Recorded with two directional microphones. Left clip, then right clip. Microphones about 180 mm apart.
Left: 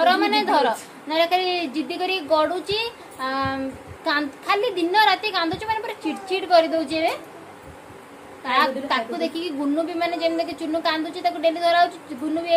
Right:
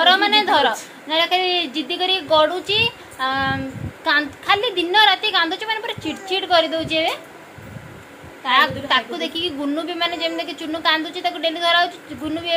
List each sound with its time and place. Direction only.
0.0 s a woman's voice: 5° right (ahead or behind)
8.5 s a woman's voice: 5° right (ahead or behind)